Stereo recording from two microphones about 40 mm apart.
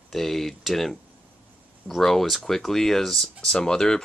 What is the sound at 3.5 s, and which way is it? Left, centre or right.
Speech, centre.